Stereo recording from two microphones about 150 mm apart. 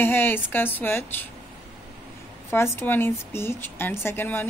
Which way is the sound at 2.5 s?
15° left (ahead or behind).